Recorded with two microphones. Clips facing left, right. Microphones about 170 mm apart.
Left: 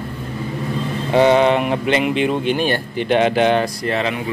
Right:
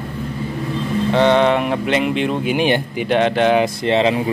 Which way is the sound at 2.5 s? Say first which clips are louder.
Right 2 dB; 15° right (ahead or behind).